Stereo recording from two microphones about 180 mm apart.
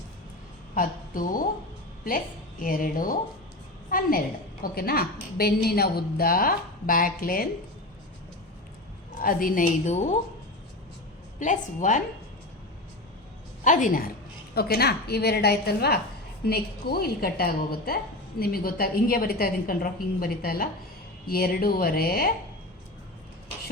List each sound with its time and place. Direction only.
0.7 s a woman's voice: 50° left (ahead or behind)
9.2 s a woman's voice: 50° left (ahead or behind)
11.3 s a woman's voice: 45° left (ahead or behind)
13.7 s a woman's voice: 45° left (ahead or behind)
14.5 s a woman's voice: 60° left (ahead or behind)